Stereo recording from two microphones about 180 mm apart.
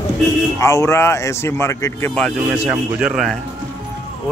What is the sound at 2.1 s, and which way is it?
Speech, 5° left (ahead or behind).